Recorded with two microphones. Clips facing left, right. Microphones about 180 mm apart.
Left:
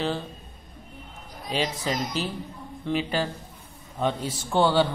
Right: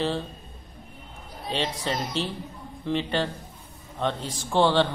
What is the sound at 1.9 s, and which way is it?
Speech, 30° right (ahead or behind).